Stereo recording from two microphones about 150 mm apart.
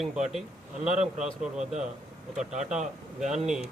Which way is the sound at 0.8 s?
50° right (ahead or behind).